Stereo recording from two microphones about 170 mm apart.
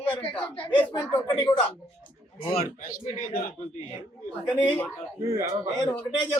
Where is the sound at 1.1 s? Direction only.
15° left (ahead or behind).